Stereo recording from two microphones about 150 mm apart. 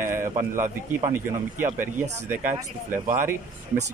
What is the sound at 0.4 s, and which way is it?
Speech, 20° right (ahead or behind).